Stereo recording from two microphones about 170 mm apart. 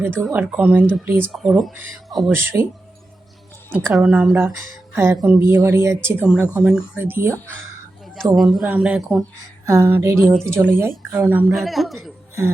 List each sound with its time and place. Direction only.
0.0 s speech: 10° right (ahead or behind)
2.3 s speech: 15° right (ahead or behind)
3.7 s speech: 10° right (ahead or behind)
5.1 s speech: 5° right (ahead or behind)
5.4 s speech: 15° right (ahead or behind)
8.3 s speech: centre (ahead or behind)
9.6 s speech: 15° right (ahead or behind)
10.3 s speech: 5° left (ahead or behind)
10.6 s speech: 10° right (ahead or behind)
11.5 s speech: centre (ahead or behind)